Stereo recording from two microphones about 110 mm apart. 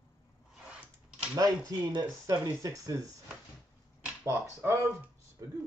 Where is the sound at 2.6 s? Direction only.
30° right (ahead or behind).